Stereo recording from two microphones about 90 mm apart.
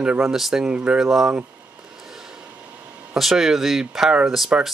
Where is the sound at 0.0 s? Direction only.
15° right (ahead or behind).